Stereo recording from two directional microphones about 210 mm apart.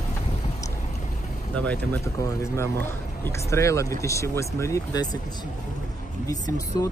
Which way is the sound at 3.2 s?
15° left (ahead or behind).